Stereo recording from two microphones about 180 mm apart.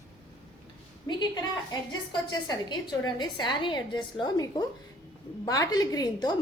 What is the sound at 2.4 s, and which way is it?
A woman's voice, 25° left (ahead or behind).